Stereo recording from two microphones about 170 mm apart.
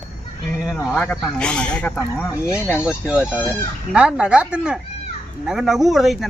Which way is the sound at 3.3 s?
10° left (ahead or behind).